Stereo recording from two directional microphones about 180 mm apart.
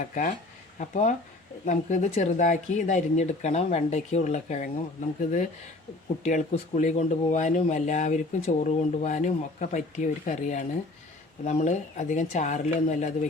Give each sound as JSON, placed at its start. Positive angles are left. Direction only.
{"t": 0.0, "sound": "speech", "side_deg": 45}
{"t": 6.2, "sound": "speech", "side_deg": 40}